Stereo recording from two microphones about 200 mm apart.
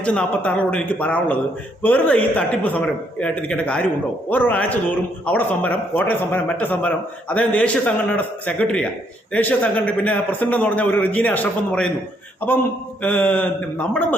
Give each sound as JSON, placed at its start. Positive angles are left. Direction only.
{"t": 0.0, "sound": "a man's voice", "side_deg": 5}
{"t": 13.0, "sound": "a man's voice", "side_deg": 5}